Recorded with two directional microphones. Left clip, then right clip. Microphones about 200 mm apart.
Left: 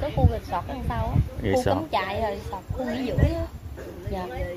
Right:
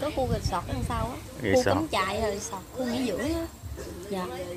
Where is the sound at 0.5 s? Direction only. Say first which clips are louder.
Left 2 dB; 55° right (ahead or behind).